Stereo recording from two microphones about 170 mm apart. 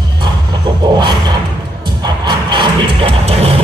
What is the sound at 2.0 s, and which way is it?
Music, 25° right (ahead or behind).